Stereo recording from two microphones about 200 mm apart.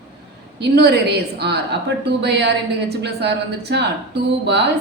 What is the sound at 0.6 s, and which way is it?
A woman's voice, 55° right (ahead or behind).